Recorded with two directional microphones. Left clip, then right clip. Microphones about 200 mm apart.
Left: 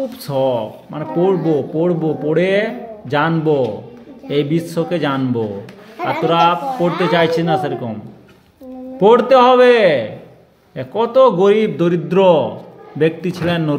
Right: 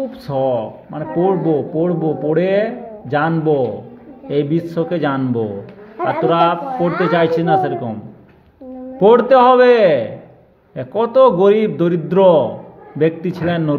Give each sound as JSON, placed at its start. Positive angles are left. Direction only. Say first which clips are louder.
{"t": 0.3, "sound": "speech", "louder": "even", "side_deg": 15}
{"t": 9.0, "sound": "speech", "louder": "even", "side_deg": 10}